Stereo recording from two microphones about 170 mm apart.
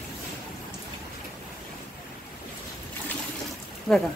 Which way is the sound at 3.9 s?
Centre (ahead or behind).